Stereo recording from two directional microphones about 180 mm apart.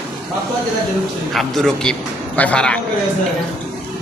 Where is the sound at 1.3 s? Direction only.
Centre (ahead or behind).